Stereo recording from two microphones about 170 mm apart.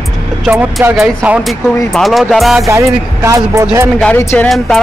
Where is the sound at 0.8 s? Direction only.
5° right (ahead or behind).